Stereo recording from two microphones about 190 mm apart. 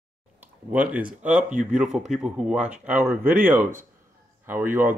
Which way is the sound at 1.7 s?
5° right (ahead or behind).